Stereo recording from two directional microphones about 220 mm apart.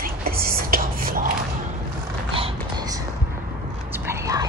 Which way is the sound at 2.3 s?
20° right (ahead or behind).